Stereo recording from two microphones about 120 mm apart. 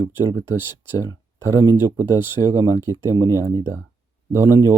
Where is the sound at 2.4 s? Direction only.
40° right (ahead or behind).